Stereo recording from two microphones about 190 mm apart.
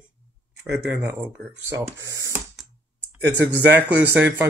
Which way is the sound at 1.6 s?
15° right (ahead or behind).